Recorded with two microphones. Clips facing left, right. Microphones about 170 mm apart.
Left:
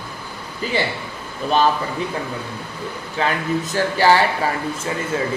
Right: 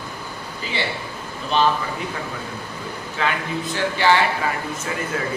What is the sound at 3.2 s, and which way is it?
Speech, 40° left (ahead or behind).